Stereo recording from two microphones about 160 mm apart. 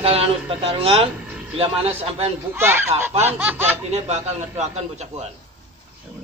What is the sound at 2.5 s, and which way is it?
Baby laughter, 15° right (ahead or behind).